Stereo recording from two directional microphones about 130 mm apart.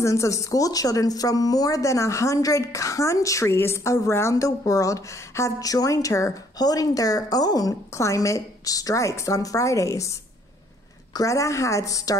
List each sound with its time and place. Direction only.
0.0 s speech: 25° left (ahead or behind)
11.1 s speech: 25° left (ahead or behind)